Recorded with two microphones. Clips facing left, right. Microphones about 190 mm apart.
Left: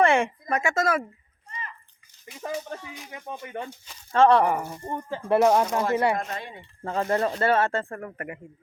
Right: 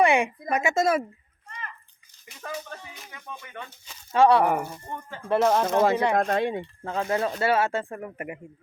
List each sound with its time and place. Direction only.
0.0 s speech: 15° right (ahead or behind)
2.2 s speech: 20° left (ahead or behind)
3.1 s speech: 30° left (ahead or behind)
4.1 s speech: 5° right (ahead or behind)
4.9 s speech: 35° left (ahead or behind)
5.3 s speech: 10° left (ahead or behind)
5.6 s speech: 90° right
6.1 s speech: 70° right (ahead or behind)
6.8 s speech: centre (ahead or behind); by 8.4 s 15° right (ahead or behind)